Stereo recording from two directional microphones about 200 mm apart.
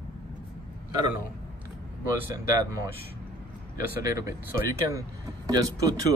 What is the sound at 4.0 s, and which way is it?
Speech, 15° right (ahead or behind).